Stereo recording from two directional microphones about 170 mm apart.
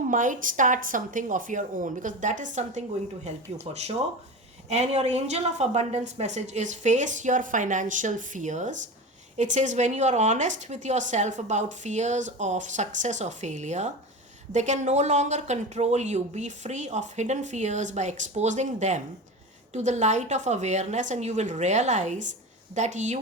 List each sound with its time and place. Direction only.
0.1 s speech: 50° right (ahead or behind)